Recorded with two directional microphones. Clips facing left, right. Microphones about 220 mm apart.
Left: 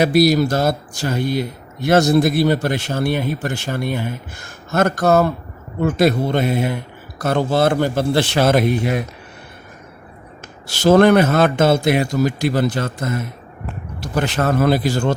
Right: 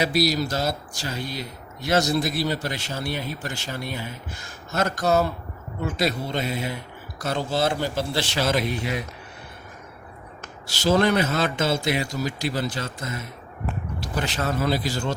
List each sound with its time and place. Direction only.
0.0 s speech: 55° left (ahead or behind)
10.7 s a man's voice: 55° left (ahead or behind)